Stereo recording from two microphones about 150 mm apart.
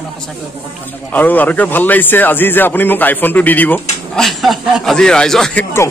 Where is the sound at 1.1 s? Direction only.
10° left (ahead or behind).